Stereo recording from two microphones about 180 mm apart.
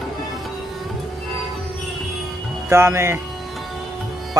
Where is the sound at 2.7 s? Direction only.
15° right (ahead or behind).